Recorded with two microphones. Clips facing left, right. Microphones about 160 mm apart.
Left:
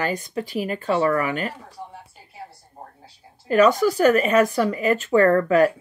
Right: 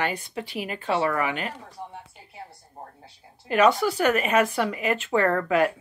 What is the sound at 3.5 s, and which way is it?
Speech, 40° left (ahead or behind).